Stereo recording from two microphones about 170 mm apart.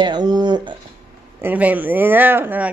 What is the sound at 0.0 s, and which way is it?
Speech, 25° right (ahead or behind).